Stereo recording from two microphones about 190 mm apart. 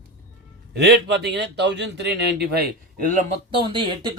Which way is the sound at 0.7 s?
60° right (ahead or behind).